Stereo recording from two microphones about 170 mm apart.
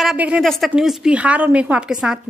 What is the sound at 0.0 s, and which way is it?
A woman's voice, 5° right (ahead or behind).